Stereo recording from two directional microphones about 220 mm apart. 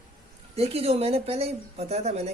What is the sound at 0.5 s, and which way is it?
Speech, 25° right (ahead or behind).